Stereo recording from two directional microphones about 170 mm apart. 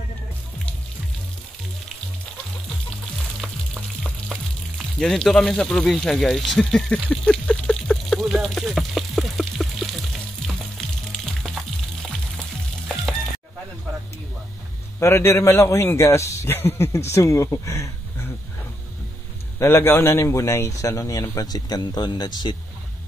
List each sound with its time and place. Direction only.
3.4 s music: centre (ahead or behind)
4.0 s frying: centre (ahead or behind)
15.0 s a man's voice: 15° left (ahead or behind)
19.6 s a man's voice: 15° left (ahead or behind)